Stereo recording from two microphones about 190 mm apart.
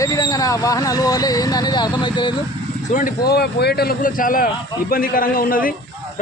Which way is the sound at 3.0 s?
55° left (ahead or behind).